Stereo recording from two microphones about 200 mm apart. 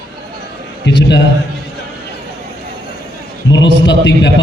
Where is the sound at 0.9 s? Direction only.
60° left (ahead or behind).